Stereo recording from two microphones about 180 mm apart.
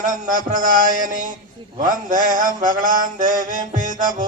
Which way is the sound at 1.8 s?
50° right (ahead or behind).